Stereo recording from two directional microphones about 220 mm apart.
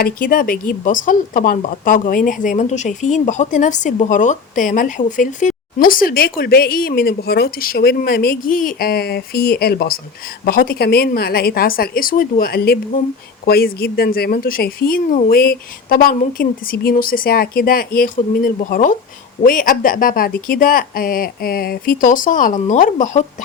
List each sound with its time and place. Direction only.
0.0 s a woman's voice: 40° left (ahead or behind)